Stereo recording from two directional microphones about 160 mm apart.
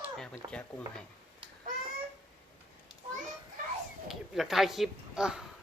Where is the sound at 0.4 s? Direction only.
25° right (ahead or behind).